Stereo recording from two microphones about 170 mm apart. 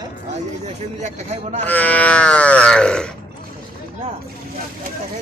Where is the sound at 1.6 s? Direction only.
10° left (ahead or behind).